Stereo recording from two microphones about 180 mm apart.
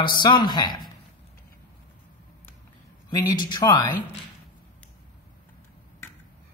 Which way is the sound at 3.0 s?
25° left (ahead or behind).